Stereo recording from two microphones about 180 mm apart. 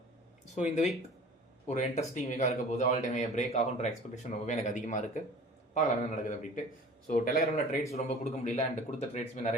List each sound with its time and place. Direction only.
0.5 s a man's voice: 40° left (ahead or behind)
7.5 s a man's voice: 35° left (ahead or behind)